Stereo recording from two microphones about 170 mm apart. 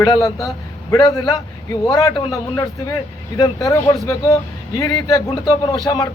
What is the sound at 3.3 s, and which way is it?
A man's voice, 20° left (ahead or behind).